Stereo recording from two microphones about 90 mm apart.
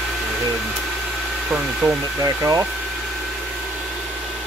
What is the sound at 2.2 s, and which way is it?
Speech, 40° right (ahead or behind).